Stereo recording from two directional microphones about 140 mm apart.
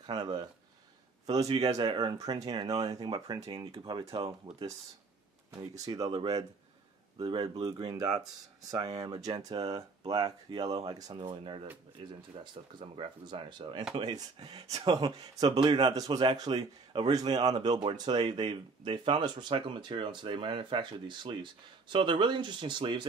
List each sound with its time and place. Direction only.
0.0 s speech: 30° right (ahead or behind)
5.6 s speech: 25° right (ahead or behind)